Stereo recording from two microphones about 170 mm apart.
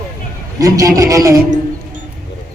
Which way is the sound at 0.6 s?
20° right (ahead or behind).